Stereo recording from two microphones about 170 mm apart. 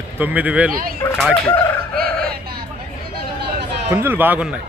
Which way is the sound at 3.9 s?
10° right (ahead or behind).